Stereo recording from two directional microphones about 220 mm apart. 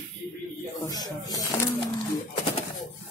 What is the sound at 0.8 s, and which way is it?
Speech, 15° left (ahead or behind).